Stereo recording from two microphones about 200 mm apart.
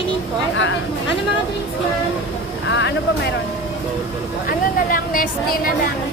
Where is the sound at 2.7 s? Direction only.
60° left (ahead or behind).